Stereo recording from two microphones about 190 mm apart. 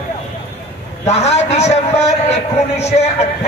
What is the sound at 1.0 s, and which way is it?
A man's voice, 35° left (ahead or behind).